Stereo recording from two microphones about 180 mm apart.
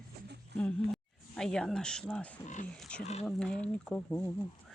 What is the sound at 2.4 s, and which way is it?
Speech, 45° left (ahead or behind).